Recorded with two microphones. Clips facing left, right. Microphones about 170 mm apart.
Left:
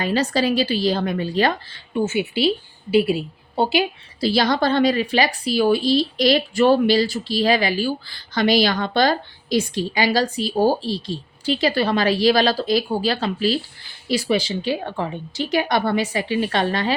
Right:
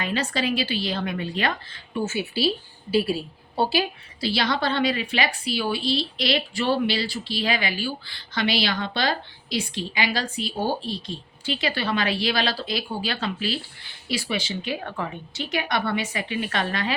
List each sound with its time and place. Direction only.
0.0 s a woman's voice: 35° left (ahead or behind)
2.0 s a woman's voice: 20° left (ahead or behind)
4.2 s a woman's voice: 40° left (ahead or behind)